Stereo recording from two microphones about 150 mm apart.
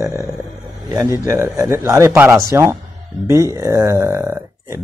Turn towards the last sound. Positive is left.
turn(degrees=-20)  # may be behind; listen again after turning